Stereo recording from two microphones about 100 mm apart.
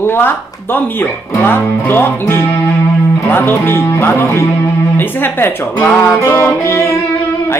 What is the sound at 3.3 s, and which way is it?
Speech, 20° left (ahead or behind).